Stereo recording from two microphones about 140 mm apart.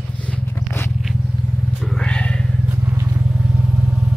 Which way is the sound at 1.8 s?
5° left (ahead or behind).